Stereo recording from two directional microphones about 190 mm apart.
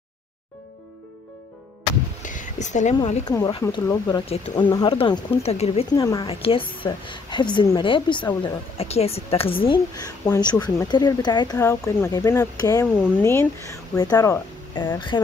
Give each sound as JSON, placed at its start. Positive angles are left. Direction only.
{"t": 2.2, "sound": "a sound", "side_deg": 40}
{"t": 3.3, "sound": "a woman's voice", "side_deg": 20}
{"t": 5.9, "sound": "a woman's voice", "side_deg": 20}
{"t": 8.7, "sound": "a woman's voice", "side_deg": 30}
{"t": 10.2, "sound": "a woman's voice", "side_deg": 20}